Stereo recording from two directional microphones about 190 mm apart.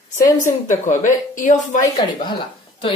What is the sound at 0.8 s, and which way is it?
Speech, 45° left (ahead or behind).